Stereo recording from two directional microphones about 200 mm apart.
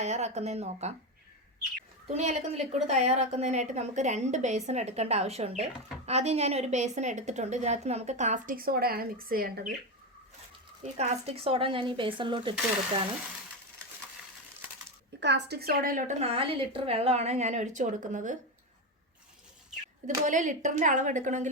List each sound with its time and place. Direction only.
0.0 s a woman's voice: 35° right (ahead or behind)
2.0 s a woman's voice: 35° right (ahead or behind)
10.8 s speech: 35° right (ahead or behind)
15.2 s a woman's voice: 55° right (ahead or behind); by 18.3 s 40° right (ahead or behind)
20.1 s a woman's voice: 40° right (ahead or behind)